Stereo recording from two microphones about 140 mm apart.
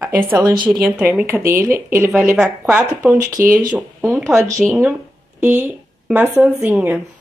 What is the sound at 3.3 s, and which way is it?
Speech, 70° right (ahead or behind).